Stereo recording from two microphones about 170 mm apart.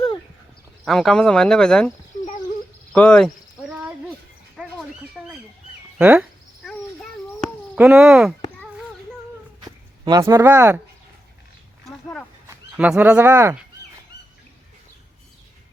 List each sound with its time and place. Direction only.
0.9 s speech: centre (ahead or behind)
2.9 s speech: 5° left (ahead or behind)
4.5 s a sound: 5° right (ahead or behind)
6.0 s cricket: 5° right (ahead or behind)
7.8 s speech: 5° right (ahead or behind)
9.6 s a sound: 25° right (ahead or behind)
12.5 s speech: 5° right (ahead or behind)